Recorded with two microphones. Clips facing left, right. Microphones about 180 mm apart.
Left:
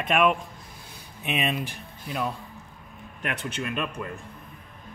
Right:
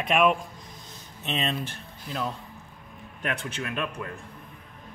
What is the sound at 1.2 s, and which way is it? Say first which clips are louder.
Speech: left 2 dB; 15° left (ahead or behind).